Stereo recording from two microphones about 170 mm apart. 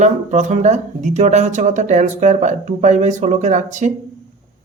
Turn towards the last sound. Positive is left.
turn(degrees=-45)  # may be behind; listen again after turning